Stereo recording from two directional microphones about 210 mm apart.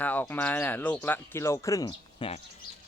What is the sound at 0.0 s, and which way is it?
Speech, 10° left (ahead or behind).